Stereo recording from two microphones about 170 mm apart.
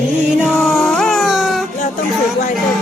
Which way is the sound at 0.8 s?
Centre (ahead or behind).